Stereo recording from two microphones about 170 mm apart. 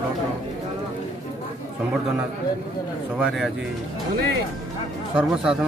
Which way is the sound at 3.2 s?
Centre (ahead or behind).